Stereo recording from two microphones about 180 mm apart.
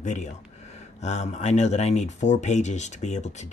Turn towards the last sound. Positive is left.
turn(degrees=40)  # may be behind; listen again after turning